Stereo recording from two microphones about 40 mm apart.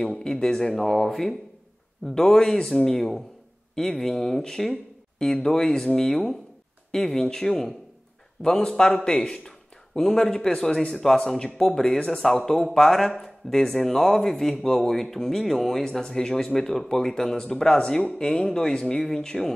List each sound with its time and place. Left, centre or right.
0.2 s speech: centre
8.4 s a man's voice: left
8.6 s speech: centre
15.8 s speech: centre
18.3 s speech: centre